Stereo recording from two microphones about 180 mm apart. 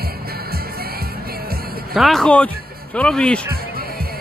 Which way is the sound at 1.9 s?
Centre (ahead or behind).